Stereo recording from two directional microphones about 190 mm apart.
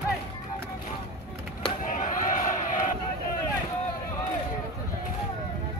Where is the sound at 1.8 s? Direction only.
45° left (ahead or behind).